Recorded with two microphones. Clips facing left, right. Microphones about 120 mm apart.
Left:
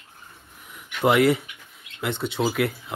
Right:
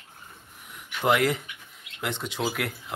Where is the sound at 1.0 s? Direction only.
Centre (ahead or behind).